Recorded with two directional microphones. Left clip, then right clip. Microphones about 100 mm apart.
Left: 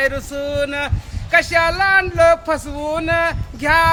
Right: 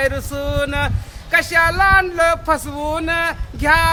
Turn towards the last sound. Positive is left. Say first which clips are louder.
# even
turn(degrees=-20)  # may be behind; listen again after turning